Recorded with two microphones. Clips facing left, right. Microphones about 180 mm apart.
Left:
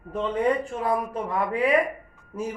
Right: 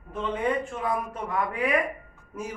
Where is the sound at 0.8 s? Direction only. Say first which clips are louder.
Left 3 dB; 35° left (ahead or behind).